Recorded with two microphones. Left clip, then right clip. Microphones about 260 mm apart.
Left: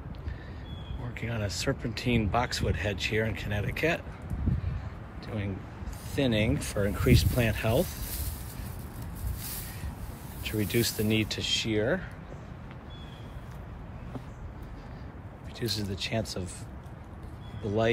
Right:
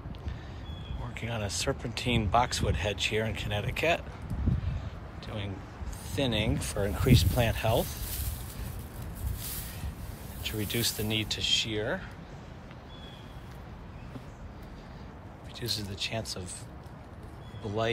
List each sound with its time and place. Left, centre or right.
1.1 s speech: centre
5.2 s a sound: centre
6.1 s speech: centre
10.4 s speech: centre
15.6 s speech: centre